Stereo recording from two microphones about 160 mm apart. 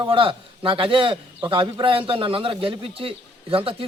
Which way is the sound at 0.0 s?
30° right (ahead or behind).